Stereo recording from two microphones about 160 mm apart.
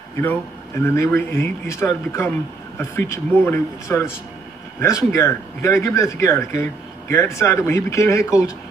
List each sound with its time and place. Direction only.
0.9 s speech: 20° left (ahead or behind)